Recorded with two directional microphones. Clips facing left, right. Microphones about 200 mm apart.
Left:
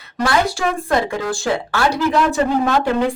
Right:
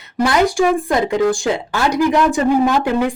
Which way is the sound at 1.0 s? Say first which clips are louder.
Right 5 dB; 15° right (ahead or behind).